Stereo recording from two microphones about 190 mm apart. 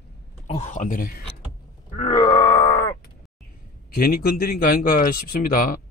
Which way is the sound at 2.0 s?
40° left (ahead or behind).